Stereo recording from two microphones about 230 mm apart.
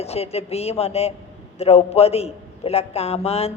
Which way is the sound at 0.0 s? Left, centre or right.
Left.